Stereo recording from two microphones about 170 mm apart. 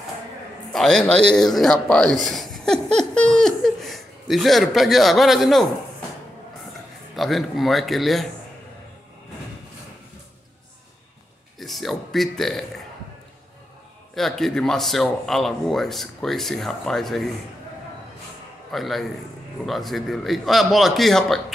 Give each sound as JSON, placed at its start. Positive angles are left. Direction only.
{"t": 0.7, "sound": "speech", "side_deg": 5}
{"t": 7.2, "sound": "speech", "side_deg": 0}
{"t": 11.6, "sound": "speech", "side_deg": 0}
{"t": 14.1, "sound": "speech", "side_deg": 0}
{"t": 18.7, "sound": "speech", "side_deg": 0}